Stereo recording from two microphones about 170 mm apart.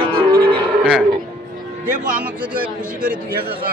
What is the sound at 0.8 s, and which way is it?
Speech, 5° right (ahead or behind).